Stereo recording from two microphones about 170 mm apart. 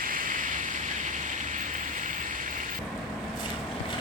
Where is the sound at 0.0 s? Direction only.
55° right (ahead or behind).